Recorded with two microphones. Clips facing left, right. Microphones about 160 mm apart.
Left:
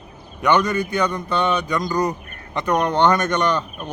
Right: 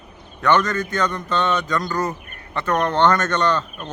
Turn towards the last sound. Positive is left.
turn(degrees=15)  # may be behind; listen again after turning